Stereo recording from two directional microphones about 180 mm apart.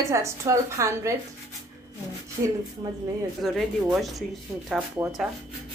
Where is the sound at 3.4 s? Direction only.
Centre (ahead or behind).